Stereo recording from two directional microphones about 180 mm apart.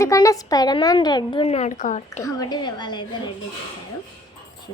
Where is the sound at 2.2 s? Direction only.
20° left (ahead or behind).